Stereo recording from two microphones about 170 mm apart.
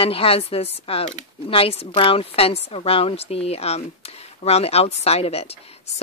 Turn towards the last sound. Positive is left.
turn(degrees=35)  # may be behind; listen again after turning